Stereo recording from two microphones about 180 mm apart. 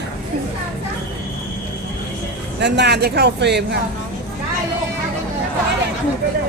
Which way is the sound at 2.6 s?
70° right (ahead or behind).